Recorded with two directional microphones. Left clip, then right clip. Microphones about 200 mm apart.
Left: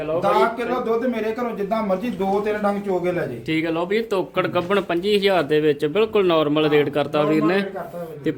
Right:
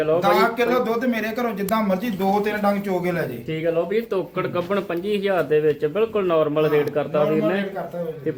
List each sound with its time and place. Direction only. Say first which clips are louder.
0.2 s speech: right 1 dB; 15° right (ahead or behind)
3.5 s speech: even; 55° left (ahead or behind)